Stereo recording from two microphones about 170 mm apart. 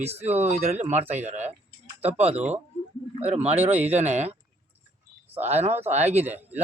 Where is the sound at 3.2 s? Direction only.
40° right (ahead or behind).